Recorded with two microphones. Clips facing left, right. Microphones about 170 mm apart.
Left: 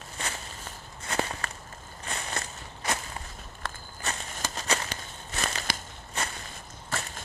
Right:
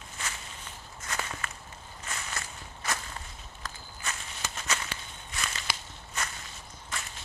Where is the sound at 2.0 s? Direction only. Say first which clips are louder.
Left 4 dB; 35° left (ahead or behind).